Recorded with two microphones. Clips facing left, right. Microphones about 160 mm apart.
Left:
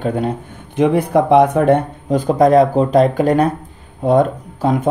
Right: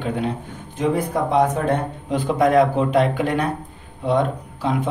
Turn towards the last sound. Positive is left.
turn(degrees=45)  # may be behind; listen again after turning